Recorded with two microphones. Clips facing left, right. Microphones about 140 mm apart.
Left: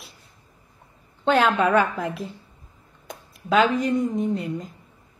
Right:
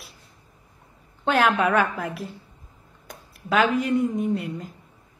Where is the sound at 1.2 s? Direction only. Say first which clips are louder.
Left 1 dB; 5° right (ahead or behind).